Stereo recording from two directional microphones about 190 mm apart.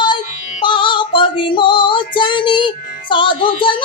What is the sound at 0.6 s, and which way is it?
Female singing, 25° left (ahead or behind).